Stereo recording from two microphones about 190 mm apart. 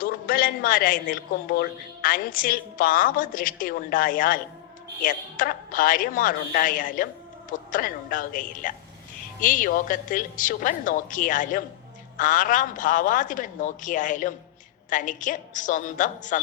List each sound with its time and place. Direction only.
0.0 s a woman's voice: 50° left (ahead or behind)